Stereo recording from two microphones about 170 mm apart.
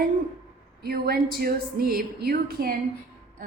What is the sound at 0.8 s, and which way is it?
Speech, 65° right (ahead or behind).